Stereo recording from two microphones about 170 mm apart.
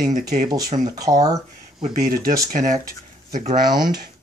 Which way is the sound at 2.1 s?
60° right (ahead or behind).